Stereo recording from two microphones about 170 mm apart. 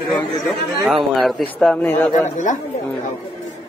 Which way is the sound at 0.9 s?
Centre (ahead or behind).